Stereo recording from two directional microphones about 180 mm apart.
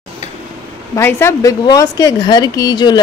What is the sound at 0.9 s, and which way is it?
A woman's voice, 15° left (ahead or behind).